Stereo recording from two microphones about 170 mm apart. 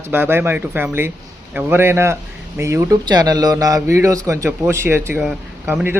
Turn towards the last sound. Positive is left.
turn(degrees=-15)  # may be behind; listen again after turning